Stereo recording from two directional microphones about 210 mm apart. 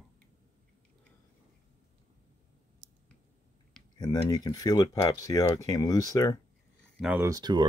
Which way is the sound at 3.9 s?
20° left (ahead or behind).